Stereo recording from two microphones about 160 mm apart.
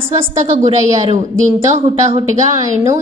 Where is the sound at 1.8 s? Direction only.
35° right (ahead or behind).